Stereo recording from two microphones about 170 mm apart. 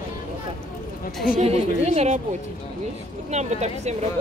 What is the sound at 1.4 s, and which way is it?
Speech, 40° right (ahead or behind).